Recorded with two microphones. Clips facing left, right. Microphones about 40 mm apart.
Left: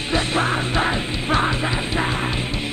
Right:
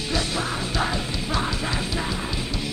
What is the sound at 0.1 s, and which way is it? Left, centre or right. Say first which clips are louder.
Music: left 6 dB; left.